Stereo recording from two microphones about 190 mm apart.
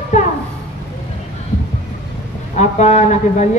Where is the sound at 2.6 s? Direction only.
40° left (ahead or behind).